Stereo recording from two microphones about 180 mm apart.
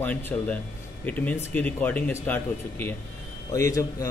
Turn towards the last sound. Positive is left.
turn(degrees=15)  # may be behind; listen again after turning